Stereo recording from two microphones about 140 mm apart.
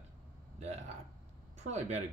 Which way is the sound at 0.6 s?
55° right (ahead or behind).